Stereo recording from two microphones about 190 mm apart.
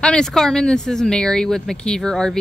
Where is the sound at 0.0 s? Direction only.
5° left (ahead or behind).